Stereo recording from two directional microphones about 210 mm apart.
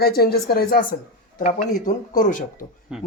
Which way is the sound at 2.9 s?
5° right (ahead or behind).